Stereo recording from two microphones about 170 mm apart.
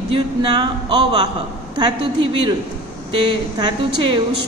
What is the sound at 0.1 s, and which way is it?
A woman's voice, 30° right (ahead or behind).